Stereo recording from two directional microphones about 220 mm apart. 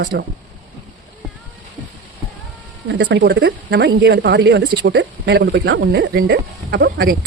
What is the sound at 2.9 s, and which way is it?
Speech, 50° right (ahead or behind).